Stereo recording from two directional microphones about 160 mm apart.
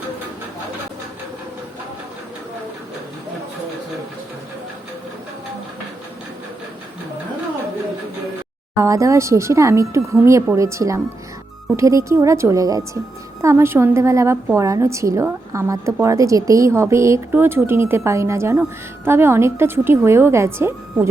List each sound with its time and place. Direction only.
8.8 s a woman's voice: 20° right (ahead or behind)